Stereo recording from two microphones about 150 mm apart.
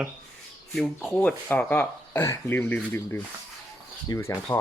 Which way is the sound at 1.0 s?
10° left (ahead or behind).